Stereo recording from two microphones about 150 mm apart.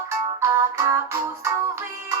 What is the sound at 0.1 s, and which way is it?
Music, 20° right (ahead or behind).